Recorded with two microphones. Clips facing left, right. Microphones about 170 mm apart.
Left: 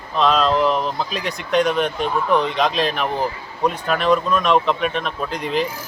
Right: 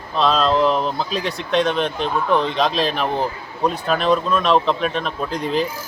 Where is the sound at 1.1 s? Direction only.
30° right (ahead or behind).